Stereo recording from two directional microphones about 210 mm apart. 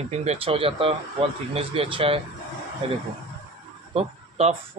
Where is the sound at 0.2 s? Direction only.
30° right (ahead or behind).